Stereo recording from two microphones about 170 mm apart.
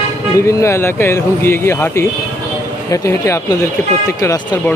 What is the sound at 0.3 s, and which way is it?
Speech, 15° left (ahead or behind).